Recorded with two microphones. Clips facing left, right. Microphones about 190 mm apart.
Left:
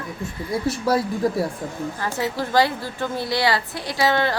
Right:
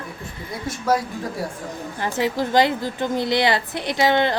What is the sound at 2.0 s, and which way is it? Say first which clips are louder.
A woman's voice: right 4 dB; 20° right (ahead or behind).